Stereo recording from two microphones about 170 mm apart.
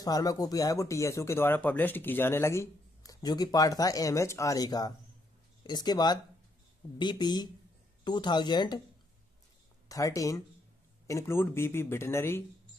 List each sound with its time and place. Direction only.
0.0 s speech: 20° left (ahead or behind)
9.8 s speech: 20° left (ahead or behind)